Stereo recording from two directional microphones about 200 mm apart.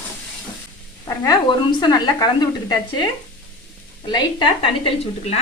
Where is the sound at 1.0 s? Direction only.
20° left (ahead or behind).